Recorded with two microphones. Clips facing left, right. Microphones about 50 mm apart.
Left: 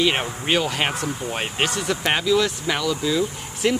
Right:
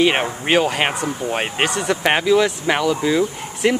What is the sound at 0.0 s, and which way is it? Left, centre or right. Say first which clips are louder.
Speech: right 4 dB; right.